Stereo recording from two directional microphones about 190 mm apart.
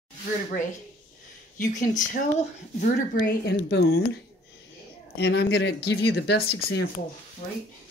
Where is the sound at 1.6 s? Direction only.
40° left (ahead or behind).